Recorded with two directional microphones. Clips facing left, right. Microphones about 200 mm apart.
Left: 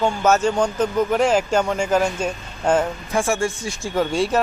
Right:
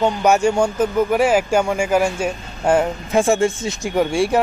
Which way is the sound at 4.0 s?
10° right (ahead or behind).